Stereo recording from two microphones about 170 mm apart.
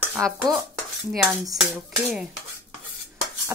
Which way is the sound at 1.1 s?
Centre (ahead or behind).